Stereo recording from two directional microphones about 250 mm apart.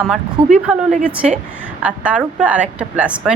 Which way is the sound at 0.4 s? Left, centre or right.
Right.